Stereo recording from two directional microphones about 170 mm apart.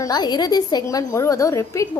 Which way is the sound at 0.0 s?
25° left (ahead or behind).